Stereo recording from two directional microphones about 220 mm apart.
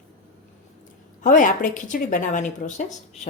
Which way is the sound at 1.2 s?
35° left (ahead or behind).